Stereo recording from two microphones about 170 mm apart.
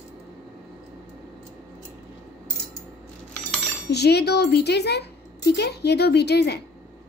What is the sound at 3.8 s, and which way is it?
A woman's voice, 75° left (ahead or behind).